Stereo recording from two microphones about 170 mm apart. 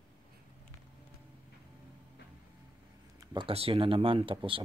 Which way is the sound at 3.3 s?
35° right (ahead or behind).